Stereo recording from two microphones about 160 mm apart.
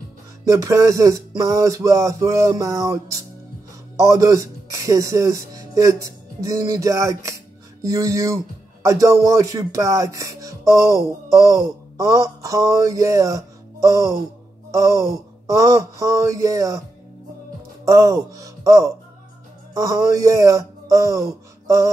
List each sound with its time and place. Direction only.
0.5 s music: 20° right (ahead or behind)
3.9 s speech: 20° right (ahead or behind)
7.8 s music: 20° right (ahead or behind)
8.8 s speech: 20° right (ahead or behind)
14.7 s music: 20° right (ahead or behind)
17.8 s music: 20° right (ahead or behind)
19.7 s speech: 20° right (ahead or behind)